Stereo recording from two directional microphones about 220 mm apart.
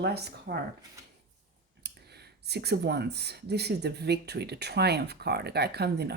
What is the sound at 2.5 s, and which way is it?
Speech, 45° right (ahead or behind).